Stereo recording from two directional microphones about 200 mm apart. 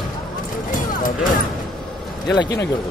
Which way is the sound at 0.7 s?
45° left (ahead or behind).